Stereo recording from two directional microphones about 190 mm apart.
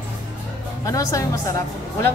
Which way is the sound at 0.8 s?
15° left (ahead or behind).